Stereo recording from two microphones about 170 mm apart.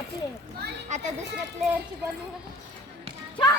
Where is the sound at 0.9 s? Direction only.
45° right (ahead or behind).